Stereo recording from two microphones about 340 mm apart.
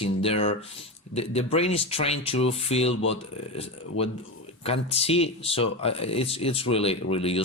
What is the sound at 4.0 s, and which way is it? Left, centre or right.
Speech, centre.